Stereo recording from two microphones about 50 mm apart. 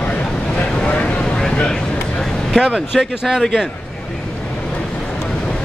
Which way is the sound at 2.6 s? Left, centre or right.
Centre.